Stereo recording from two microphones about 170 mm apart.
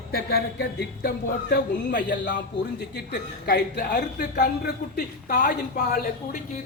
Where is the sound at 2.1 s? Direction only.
90° left.